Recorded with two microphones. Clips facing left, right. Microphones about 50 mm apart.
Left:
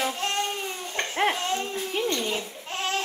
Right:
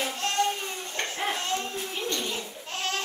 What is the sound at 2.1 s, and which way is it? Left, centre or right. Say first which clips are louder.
Speech: left 3 dB; left.